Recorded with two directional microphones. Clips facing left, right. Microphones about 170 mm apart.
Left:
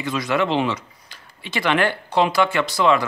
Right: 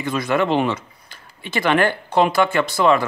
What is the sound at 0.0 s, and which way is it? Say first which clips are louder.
A man's voice: right 2 dB; 50° right (ahead or behind).